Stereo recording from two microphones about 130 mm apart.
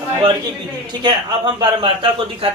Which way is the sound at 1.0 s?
35° right (ahead or behind).